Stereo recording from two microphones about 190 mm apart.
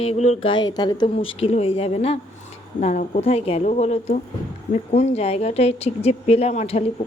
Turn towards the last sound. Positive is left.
turn(degrees=35)  # may be behind; listen again after turning